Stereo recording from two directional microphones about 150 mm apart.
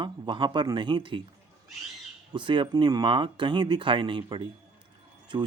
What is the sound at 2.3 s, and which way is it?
Speech, 35° right (ahead or behind).